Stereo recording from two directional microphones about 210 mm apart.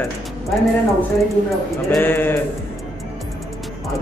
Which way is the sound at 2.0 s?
10° left (ahead or behind).